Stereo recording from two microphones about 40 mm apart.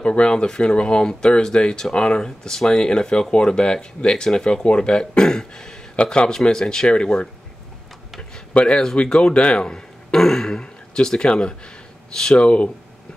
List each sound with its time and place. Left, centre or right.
0.0 s a man's voice: left
8.5 s speech: left
10.1 s a man's voice: centre
12.4 s speech: left